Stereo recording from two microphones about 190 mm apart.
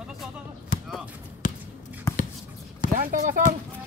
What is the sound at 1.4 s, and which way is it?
Basketball bounce, 40° left (ahead or behind).